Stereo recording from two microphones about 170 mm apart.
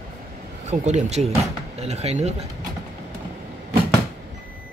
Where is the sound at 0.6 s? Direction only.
40° right (ahead or behind).